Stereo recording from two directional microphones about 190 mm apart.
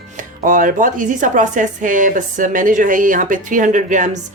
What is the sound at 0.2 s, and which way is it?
Speech, 45° right (ahead or behind).